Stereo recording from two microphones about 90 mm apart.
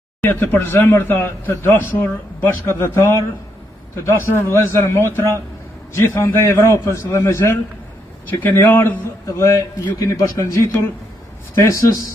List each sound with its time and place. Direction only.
0.2 s a man's voice: 25° left (ahead or behind)
8.3 s a man's voice: 20° left (ahead or behind); by 12.1 s 35° left (ahead or behind)